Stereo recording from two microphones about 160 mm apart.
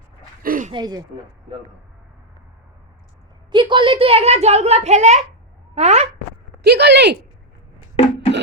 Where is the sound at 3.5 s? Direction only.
30° right (ahead or behind).